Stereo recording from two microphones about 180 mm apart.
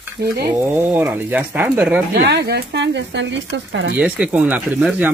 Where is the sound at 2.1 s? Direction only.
70° right (ahead or behind); by 3.9 s 90° right.